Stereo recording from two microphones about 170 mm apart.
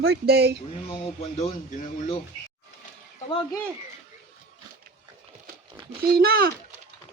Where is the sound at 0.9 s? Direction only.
40° left (ahead or behind).